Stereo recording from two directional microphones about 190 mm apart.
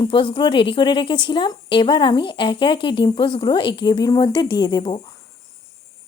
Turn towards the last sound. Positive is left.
turn(degrees=25)  # may be behind; listen again after turning